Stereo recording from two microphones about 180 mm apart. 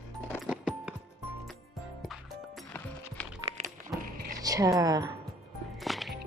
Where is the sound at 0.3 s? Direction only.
10° left (ahead or behind).